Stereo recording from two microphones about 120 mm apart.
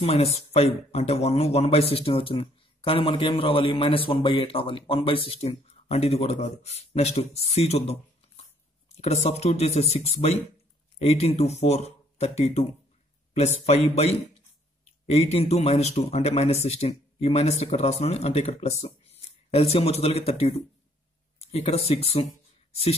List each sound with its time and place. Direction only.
0.0 s speech: 60° left (ahead or behind)